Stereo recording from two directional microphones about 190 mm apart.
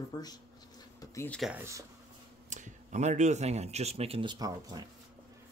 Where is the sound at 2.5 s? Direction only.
40° right (ahead or behind); by 4.9 s 20° right (ahead or behind).